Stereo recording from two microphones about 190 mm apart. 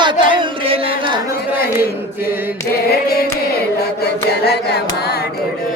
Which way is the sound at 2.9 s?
50° left (ahead or behind).